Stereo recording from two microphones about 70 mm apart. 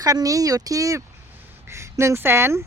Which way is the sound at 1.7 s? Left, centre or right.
Right.